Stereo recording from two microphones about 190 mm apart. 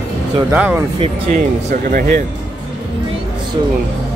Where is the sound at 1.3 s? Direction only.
45° right (ahead or behind).